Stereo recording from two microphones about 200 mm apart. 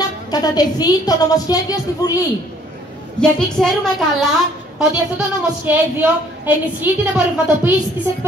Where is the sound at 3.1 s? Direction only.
5° left (ahead or behind).